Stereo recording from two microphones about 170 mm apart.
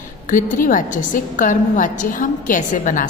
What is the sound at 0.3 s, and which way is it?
A woman's voice, 50° left (ahead or behind).